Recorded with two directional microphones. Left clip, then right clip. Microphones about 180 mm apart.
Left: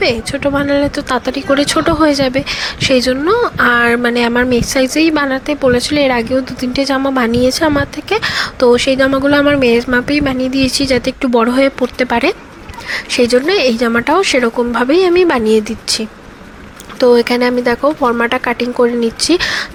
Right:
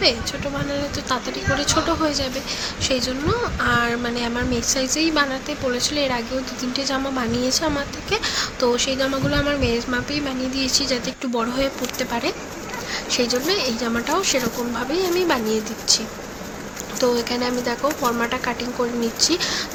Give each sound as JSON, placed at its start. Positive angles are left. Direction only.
{"t": 0.0, "sound": "speech", "side_deg": 40}